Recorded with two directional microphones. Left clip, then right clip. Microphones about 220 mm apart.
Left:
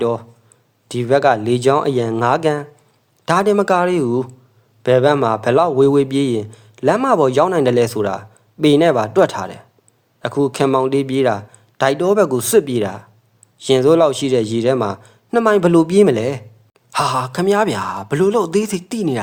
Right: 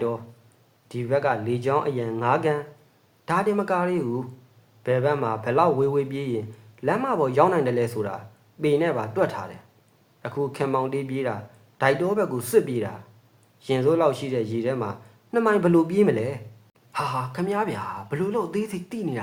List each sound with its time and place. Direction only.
0.9 s a man's voice: 45° left (ahead or behind)